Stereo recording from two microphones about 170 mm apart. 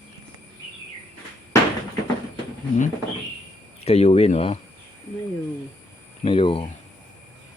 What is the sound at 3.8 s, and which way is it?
Speech, 40° left (ahead or behind).